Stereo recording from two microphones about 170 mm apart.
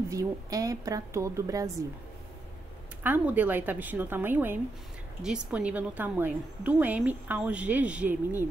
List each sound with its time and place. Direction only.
0.1 s a woman's voice: 20° right (ahead or behind)
3.0 s a woman's voice: 10° right (ahead or behind)